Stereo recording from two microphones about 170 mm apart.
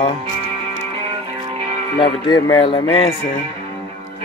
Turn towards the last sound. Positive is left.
turn(degrees=35)  # may be behind; listen again after turning